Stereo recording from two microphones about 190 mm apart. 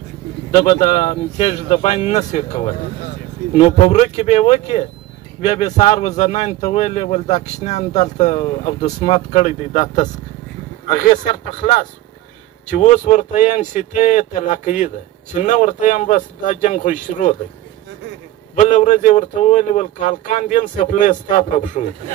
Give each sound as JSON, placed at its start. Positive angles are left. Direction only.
{"t": 0.5, "sound": "speech", "side_deg": 35}
{"t": 18.5, "sound": "speech", "side_deg": 40}